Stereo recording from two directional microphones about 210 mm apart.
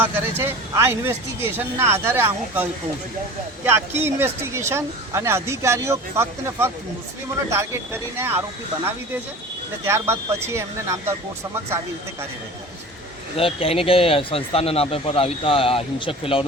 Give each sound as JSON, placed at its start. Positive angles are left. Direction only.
{"t": 0.0, "sound": "speech", "side_deg": -10}
{"t": 13.3, "sound": "speech", "side_deg": 25}